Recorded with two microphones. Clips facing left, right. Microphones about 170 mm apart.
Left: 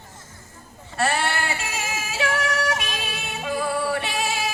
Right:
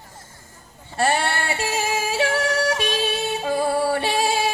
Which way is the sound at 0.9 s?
25° right (ahead or behind).